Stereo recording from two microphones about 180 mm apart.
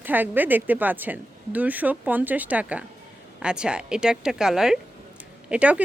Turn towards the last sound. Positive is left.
turn(degrees=-5)  # may be behind; listen again after turning